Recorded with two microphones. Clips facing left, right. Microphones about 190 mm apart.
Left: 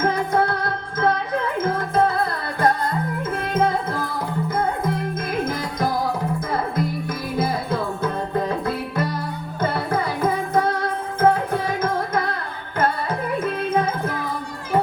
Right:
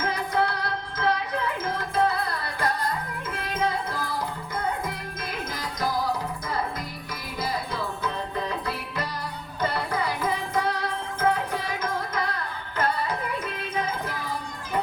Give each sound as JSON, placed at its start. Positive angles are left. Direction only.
{"t": 0.0, "sound": "music", "side_deg": 50}
{"t": 5.5, "sound": "music", "side_deg": 50}